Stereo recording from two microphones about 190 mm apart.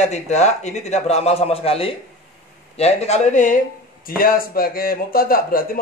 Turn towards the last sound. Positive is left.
turn(degrees=50)  # may be behind; listen again after turning